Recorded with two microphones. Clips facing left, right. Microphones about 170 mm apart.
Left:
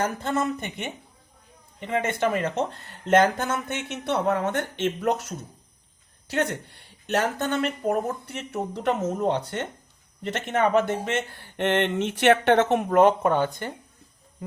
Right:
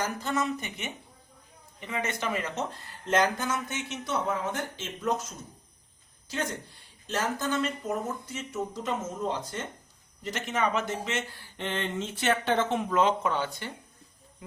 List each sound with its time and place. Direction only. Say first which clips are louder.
0.0 s speech: left 4 dB; 55° left (ahead or behind)
1.9 s speech: left 7 dB; 55° left (ahead or behind)